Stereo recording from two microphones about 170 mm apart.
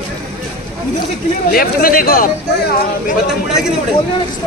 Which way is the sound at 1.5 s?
60° left (ahead or behind).